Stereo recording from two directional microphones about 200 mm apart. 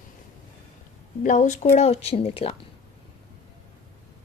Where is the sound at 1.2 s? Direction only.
40° left (ahead or behind).